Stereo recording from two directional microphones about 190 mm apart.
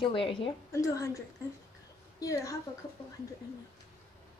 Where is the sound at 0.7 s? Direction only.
15° left (ahead or behind).